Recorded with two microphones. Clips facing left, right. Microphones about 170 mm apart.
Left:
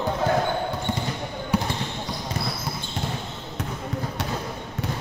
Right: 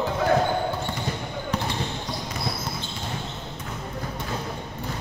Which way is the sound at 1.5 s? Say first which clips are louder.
Left 4 dB; 10° left (ahead or behind).